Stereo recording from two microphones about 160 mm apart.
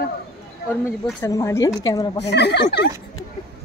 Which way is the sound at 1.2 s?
20° left (ahead or behind).